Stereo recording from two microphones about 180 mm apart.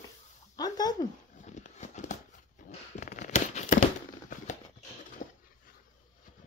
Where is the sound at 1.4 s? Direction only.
40° left (ahead or behind).